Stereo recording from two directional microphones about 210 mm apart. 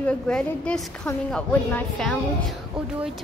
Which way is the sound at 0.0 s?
5° left (ahead or behind).